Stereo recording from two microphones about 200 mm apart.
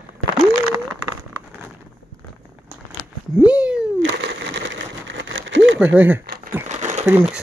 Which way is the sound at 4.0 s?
65° right (ahead or behind).